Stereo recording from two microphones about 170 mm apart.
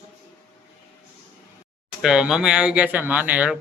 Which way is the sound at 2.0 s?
5° right (ahead or behind).